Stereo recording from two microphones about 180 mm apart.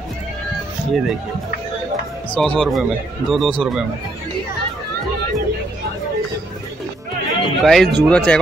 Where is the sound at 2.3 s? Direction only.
5° left (ahead or behind).